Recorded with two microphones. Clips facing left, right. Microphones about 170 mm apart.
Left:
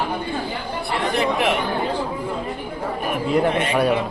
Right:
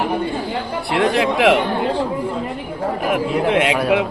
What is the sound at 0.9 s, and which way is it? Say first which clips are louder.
Speech: right 4 dB; 90° right.